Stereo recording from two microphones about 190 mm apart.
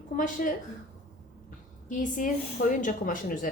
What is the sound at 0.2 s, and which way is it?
Speech, 45° left (ahead or behind).